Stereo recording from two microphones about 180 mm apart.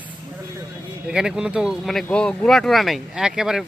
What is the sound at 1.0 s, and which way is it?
Speech, 5° right (ahead or behind).